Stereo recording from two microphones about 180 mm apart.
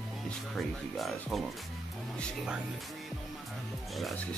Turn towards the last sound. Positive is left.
turn(degrees=5)  # may be behind; listen again after turning